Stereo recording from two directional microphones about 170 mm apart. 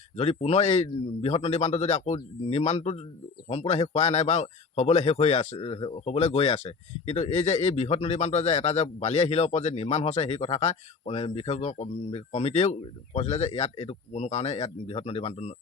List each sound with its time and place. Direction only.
0.2 s a man's voice: 35° left (ahead or behind)